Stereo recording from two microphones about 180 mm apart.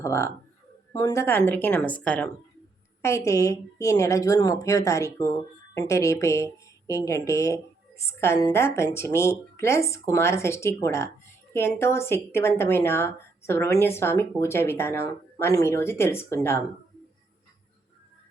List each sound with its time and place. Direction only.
0.0 s speech: 15° left (ahead or behind)